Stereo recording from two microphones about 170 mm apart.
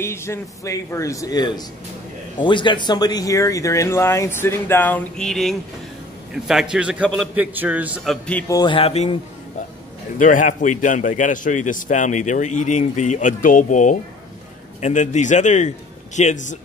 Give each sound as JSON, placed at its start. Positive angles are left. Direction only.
{"t": 0.0, "sound": "a man's voice", "side_deg": 15}
{"t": 8.5, "sound": "music", "side_deg": 25}
{"t": 10.1, "sound": "a man's voice", "side_deg": 50}